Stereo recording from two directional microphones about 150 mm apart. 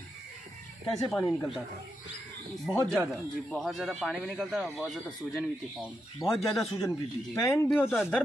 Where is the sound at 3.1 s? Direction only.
Centre (ahead or behind).